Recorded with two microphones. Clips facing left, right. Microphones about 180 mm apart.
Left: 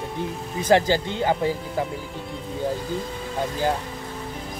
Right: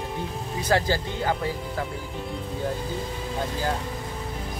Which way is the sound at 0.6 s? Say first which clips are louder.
Left 5 dB; 20° left (ahead or behind).